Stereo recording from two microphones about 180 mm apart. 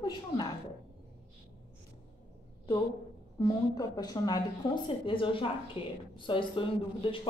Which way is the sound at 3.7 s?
20° left (ahead or behind).